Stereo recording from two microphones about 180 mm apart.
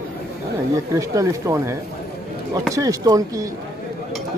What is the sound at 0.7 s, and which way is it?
Speech, 20° right (ahead or behind).